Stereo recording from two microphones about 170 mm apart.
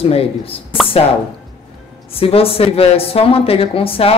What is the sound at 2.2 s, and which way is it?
Speech, 35° left (ahead or behind).